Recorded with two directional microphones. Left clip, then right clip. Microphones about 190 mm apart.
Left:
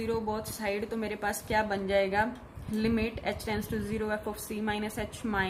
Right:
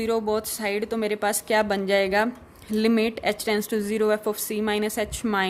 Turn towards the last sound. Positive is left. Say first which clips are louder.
# right 7 dB
turn(degrees=-55)  # may be behind; listen again after turning